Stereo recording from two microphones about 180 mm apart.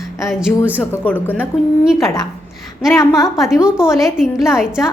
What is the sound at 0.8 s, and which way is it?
Speech, 10° left (ahead or behind).